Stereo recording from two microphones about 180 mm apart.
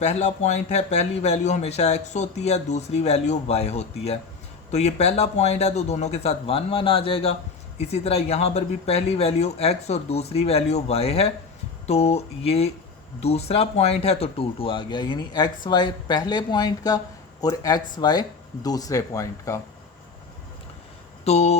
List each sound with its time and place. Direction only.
0.0 s speech: 40° left (ahead or behind); by 19.5 s 15° left (ahead or behind)
21.2 s speech: 35° left (ahead or behind)